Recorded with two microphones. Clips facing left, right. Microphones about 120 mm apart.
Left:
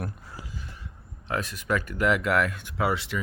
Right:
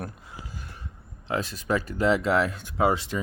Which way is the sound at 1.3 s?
30° right (ahead or behind).